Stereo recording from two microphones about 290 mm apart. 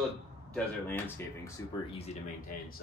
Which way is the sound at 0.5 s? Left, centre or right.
Centre.